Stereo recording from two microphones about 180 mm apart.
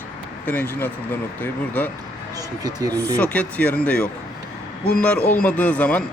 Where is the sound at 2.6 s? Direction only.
20° right (ahead or behind).